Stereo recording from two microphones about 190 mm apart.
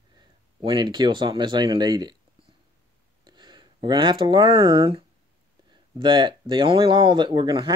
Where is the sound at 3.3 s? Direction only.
25° right (ahead or behind).